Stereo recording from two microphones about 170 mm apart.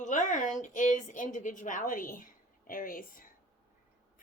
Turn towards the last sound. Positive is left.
turn(degrees=55)  # may be behind; listen again after turning